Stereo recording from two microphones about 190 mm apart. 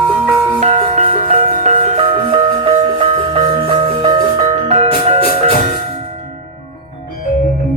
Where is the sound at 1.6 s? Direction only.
30° right (ahead or behind).